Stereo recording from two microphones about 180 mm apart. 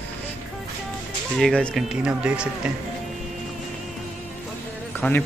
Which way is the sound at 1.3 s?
5° left (ahead or behind).